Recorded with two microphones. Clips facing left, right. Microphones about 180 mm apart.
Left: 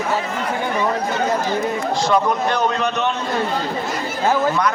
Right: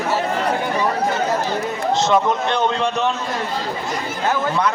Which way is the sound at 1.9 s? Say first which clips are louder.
Right 2 dB; 25° right (ahead or behind).